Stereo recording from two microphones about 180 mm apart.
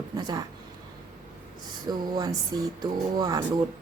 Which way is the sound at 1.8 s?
25° right (ahead or behind).